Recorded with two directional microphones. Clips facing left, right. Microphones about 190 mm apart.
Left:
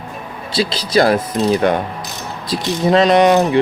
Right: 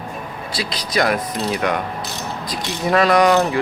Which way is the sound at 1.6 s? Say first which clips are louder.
Left 4 dB; 30° left (ahead or behind).